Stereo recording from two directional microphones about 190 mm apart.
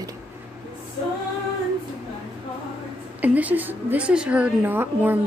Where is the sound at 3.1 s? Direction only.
10° right (ahead or behind).